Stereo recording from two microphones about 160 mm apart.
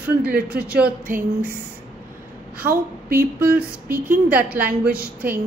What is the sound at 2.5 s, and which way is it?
Speech, 65° right (ahead or behind).